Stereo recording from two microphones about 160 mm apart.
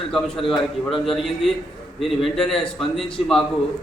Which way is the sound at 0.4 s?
35° left (ahead or behind).